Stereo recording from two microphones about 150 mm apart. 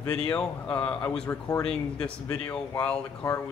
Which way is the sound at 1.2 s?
20° left (ahead or behind).